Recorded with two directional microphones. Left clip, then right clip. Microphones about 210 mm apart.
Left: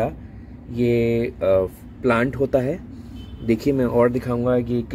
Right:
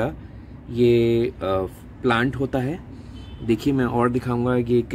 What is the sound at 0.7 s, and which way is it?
Speech, 10° right (ahead or behind).